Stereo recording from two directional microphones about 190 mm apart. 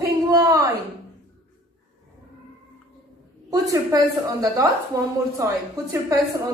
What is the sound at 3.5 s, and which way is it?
A woman's voice, 20° right (ahead or behind).